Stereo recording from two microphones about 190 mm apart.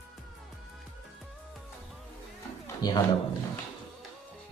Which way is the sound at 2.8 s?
20° left (ahead or behind).